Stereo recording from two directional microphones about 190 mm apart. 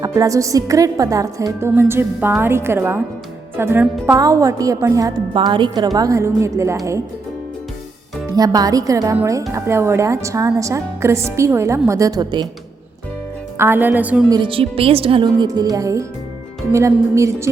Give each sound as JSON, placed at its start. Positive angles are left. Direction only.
{"t": 0.0, "sound": "a woman's voice", "side_deg": -20}
{"t": 8.3, "sound": "a woman's voice", "side_deg": -20}
{"t": 13.6, "sound": "a woman's voice", "side_deg": -10}
{"t": 14.3, "sound": "a woman's voice", "side_deg": -25}